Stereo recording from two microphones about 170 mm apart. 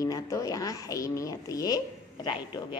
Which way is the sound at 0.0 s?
20° left (ahead or behind).